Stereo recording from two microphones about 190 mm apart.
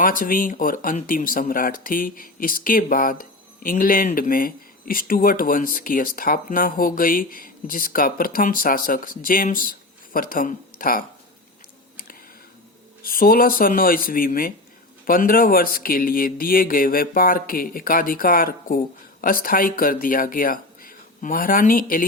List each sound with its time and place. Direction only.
0.0 s speech: 45° left (ahead or behind)
13.1 s speech: 50° left (ahead or behind)